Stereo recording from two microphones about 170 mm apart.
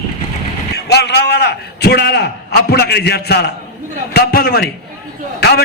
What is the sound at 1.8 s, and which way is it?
A man's voice, 70° left (ahead or behind).